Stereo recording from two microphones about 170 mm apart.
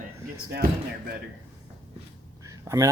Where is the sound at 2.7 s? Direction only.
15° right (ahead or behind).